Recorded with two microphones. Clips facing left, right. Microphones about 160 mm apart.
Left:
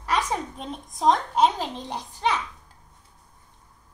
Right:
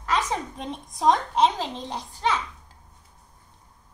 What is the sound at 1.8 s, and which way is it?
Babbling, 15° left (ahead or behind).